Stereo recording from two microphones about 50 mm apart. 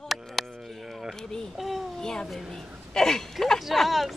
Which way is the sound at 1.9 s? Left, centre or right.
Centre.